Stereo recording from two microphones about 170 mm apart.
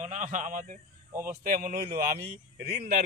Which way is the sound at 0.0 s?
45° right (ahead or behind).